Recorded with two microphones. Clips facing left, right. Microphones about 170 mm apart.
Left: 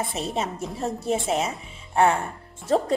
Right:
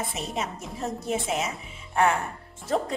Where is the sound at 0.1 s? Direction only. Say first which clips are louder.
Left 4 dB; 30° left (ahead or behind).